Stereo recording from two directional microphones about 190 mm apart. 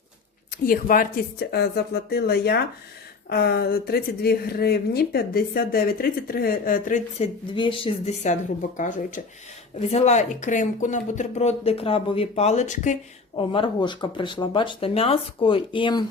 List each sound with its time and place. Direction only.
0.6 s speech: 50° left (ahead or behind)
7.5 s speech: 25° left (ahead or behind)
13.3 s speech: 25° left (ahead or behind)